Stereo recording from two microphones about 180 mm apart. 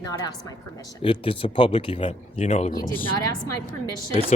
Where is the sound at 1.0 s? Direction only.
30° left (ahead or behind).